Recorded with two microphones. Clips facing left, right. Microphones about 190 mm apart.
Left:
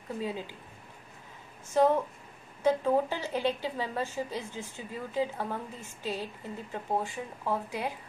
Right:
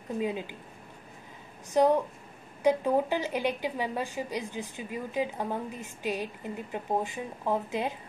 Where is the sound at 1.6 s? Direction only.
15° right (ahead or behind).